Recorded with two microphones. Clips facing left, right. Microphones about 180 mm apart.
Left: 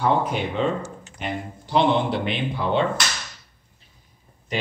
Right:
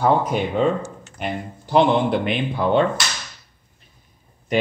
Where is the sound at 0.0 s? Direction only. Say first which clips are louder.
Right 3 dB; 45° right (ahead or behind).